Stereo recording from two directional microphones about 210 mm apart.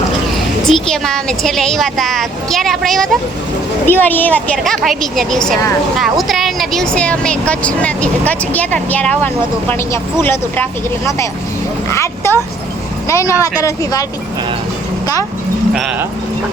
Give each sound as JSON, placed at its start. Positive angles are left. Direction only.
{"t": 0.7, "sound": "speech", "side_deg": 0}
{"t": 15.7, "sound": "speech", "side_deg": -5}